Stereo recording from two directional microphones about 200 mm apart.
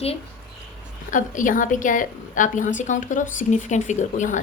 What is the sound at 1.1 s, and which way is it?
A woman's voice, 40° left (ahead or behind).